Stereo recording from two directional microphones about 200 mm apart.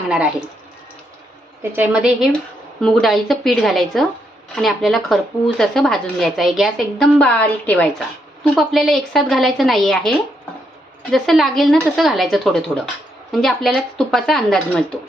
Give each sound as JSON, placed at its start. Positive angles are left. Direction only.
{"t": 0.1, "sound": "speech", "side_deg": -5}
{"t": 1.7, "sound": "a woman's voice", "side_deg": -5}